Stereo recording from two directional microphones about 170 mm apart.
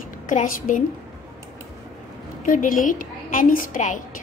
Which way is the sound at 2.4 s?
50° left (ahead or behind).